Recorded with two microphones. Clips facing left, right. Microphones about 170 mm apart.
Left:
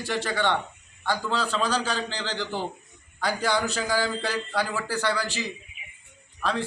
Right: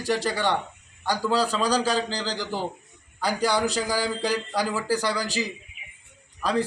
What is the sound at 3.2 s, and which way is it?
Speech, 35° right (ahead or behind).